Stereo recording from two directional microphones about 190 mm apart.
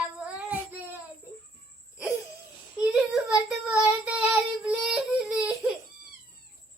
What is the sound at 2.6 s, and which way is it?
Child singing, 10° right (ahead or behind).